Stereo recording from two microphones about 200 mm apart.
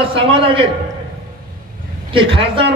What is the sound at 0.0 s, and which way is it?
Speech, 25° right (ahead or behind).